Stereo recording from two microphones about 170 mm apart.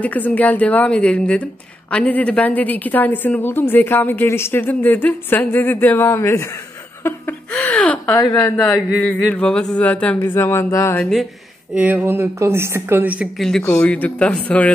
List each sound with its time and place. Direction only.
0.0 s a woman's voice: 10° left (ahead or behind)
8.1 s a woman's voice: 20° left (ahead or behind)
8.5 s a woman's voice: centre (ahead or behind)
11.7 s speech: 10° right (ahead or behind)
13.4 s a woman's voice: 5° left (ahead or behind)